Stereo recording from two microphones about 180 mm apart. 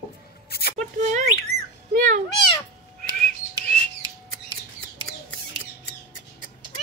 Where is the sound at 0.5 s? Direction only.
60° left (ahead or behind).